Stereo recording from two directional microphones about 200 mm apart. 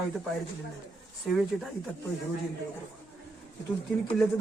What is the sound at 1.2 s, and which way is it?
Speech, centre (ahead or behind).